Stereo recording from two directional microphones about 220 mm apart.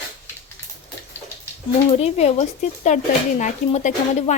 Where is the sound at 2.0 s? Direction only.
30° left (ahead or behind).